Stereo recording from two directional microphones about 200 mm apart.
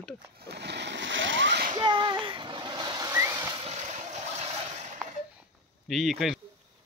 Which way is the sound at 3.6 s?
35° right (ahead or behind).